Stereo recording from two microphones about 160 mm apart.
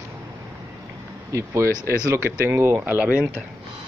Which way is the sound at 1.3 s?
20° right (ahead or behind).